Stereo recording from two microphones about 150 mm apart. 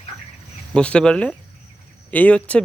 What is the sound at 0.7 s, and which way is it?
Speech, 5° left (ahead or behind).